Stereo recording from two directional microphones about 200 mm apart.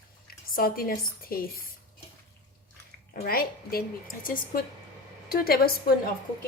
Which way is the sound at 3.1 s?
45° left (ahead or behind).